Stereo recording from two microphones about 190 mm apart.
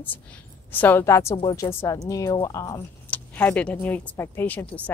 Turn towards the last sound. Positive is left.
turn(degrees=10)  # may be behind; listen again after turning